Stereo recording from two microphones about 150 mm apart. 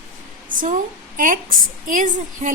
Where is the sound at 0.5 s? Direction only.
60° right (ahead or behind).